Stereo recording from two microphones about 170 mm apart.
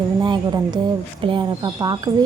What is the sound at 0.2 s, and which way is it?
Speech, 25° right (ahead or behind).